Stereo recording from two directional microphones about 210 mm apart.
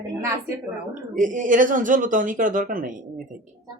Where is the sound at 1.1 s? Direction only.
40° right (ahead or behind).